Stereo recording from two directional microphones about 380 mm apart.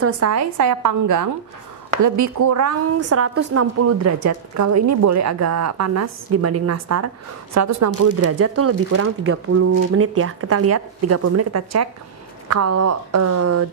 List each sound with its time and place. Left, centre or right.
0.0 s a woman's voice: right